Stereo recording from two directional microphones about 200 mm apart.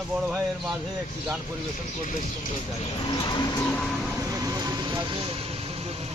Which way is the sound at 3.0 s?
25° left (ahead or behind).